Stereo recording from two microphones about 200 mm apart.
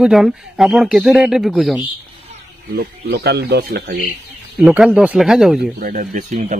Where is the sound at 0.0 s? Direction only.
Centre (ahead or behind).